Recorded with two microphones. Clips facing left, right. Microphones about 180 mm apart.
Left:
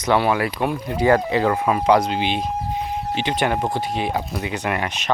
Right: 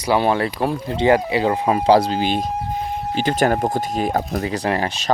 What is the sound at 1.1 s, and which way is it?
Speech, 15° right (ahead or behind).